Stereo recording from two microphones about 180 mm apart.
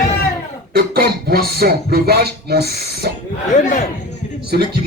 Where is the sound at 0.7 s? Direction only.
60° right (ahead or behind).